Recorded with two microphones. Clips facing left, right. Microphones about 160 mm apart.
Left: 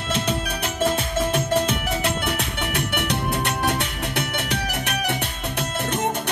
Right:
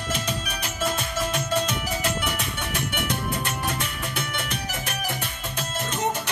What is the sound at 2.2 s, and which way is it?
Music, 65° left (ahead or behind).